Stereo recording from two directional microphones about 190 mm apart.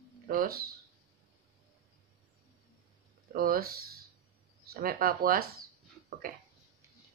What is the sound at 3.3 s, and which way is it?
Speech, 50° right (ahead or behind).